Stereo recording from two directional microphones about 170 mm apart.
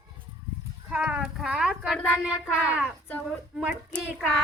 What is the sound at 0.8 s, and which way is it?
A woman's voice, 5° right (ahead or behind).